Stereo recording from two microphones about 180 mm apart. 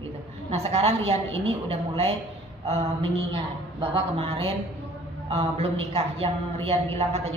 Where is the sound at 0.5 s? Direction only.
35° right (ahead or behind).